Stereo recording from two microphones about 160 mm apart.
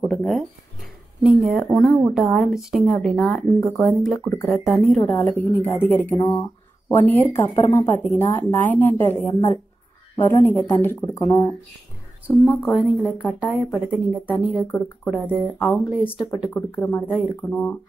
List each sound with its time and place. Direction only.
0.0 s a woman's voice: centre (ahead or behind)
12.4 s speech: 5° right (ahead or behind)
16.1 s speech: 25° left (ahead or behind)
16.4 s a woman's voice: 15° left (ahead or behind)